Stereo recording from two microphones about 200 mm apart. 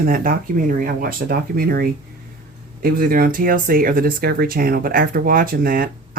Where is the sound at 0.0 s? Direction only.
45° right (ahead or behind).